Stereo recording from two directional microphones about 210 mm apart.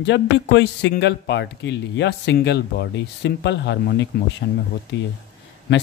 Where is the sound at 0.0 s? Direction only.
55° left (ahead or behind).